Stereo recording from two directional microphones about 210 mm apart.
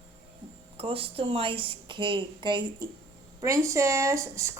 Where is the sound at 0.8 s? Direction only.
25° right (ahead or behind).